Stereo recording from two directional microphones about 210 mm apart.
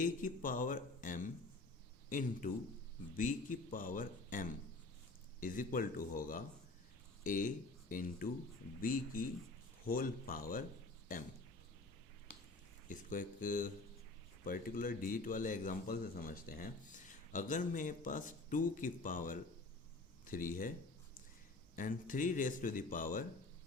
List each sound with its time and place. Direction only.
0.0 s a man's voice: 40° left (ahead or behind)
12.9 s a man's voice: 40° left (ahead or behind)
21.8 s a man's voice: 40° left (ahead or behind)